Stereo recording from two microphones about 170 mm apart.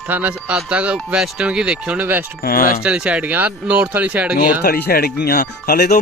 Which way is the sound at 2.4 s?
60° left (ahead or behind).